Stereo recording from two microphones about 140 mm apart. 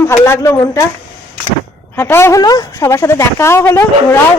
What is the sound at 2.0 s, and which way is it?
A man's voice, 20° left (ahead or behind).